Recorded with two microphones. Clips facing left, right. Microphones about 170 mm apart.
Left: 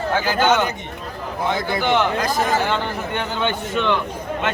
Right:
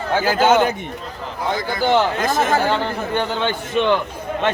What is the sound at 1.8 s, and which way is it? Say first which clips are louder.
Speech: right 4 dB; 30° right (ahead or behind).